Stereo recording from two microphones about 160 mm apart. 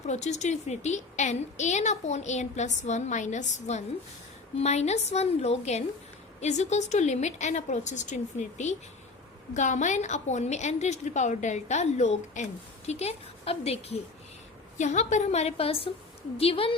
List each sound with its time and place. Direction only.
0.0 s a woman's voice: 45° left (ahead or behind)